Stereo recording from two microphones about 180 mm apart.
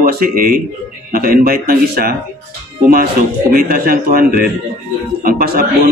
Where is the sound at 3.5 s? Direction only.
55° right (ahead or behind).